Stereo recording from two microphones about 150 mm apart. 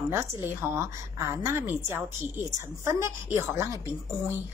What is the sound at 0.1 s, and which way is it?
A woman's voice, 15° right (ahead or behind).